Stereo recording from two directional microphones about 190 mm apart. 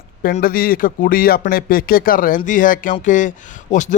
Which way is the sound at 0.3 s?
50° left (ahead or behind).